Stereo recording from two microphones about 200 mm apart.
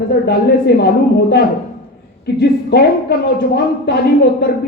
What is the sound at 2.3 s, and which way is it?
Speech, 55° left (ahead or behind).